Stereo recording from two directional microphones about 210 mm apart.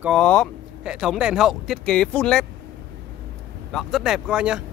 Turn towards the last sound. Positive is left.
turn(degrees=-5)  # may be behind; listen again after turning